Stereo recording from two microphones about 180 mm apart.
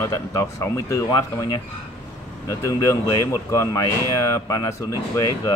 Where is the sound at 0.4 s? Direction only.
15° left (ahead or behind).